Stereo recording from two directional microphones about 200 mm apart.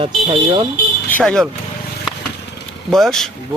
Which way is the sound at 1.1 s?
5° left (ahead or behind).